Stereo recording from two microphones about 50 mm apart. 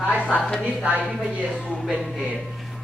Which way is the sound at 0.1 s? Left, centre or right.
Left.